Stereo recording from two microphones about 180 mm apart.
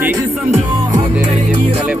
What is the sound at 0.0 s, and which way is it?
Music, 10° right (ahead or behind).